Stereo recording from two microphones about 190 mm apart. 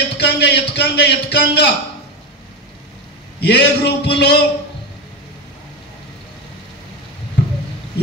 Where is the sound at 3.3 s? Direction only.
60° left (ahead or behind).